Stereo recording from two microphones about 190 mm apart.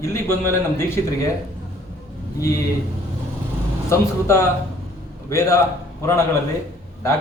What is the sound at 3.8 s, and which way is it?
Speech, 15° left (ahead or behind).